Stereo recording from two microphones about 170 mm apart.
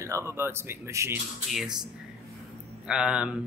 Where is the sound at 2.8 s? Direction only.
5° right (ahead or behind).